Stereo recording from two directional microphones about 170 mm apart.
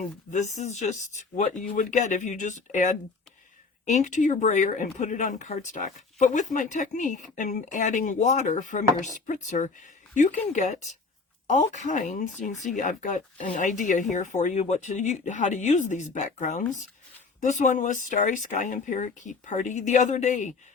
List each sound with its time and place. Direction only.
0.3 s speech: 45° left (ahead or behind)